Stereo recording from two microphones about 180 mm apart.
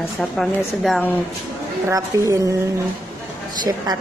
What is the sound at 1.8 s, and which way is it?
Speech, 15° right (ahead or behind).